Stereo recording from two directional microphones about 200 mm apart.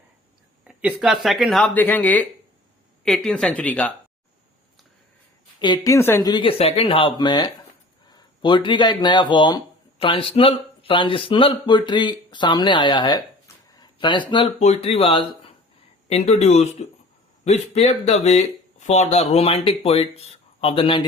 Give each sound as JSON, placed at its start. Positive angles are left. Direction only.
{"t": 0.7, "sound": "speech", "side_deg": -5}
{"t": 5.5, "sound": "speech", "side_deg": 20}